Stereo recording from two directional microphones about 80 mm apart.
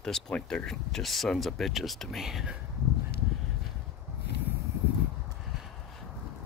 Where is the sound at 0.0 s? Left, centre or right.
Centre.